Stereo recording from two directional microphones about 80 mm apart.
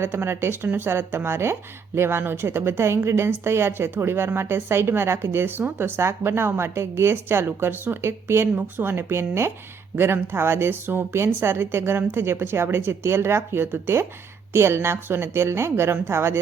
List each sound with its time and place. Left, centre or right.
0.0 s a woman's voice: right